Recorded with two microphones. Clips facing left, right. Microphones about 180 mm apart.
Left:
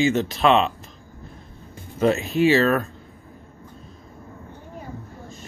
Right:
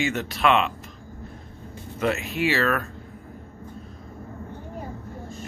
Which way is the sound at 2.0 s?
30° left (ahead or behind).